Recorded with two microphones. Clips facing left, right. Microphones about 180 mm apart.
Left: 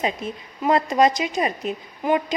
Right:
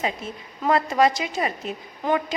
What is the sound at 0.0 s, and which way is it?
A woman's voice, 15° left (ahead or behind).